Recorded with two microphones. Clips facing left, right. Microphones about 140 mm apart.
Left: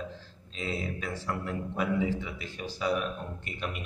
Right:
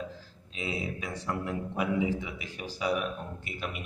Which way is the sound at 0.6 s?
10° right (ahead or behind).